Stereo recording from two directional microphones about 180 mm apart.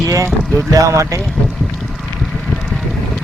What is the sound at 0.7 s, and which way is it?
Speech, 20° right (ahead or behind).